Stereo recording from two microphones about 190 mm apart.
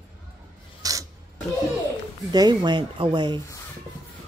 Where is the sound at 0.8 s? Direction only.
20° right (ahead or behind).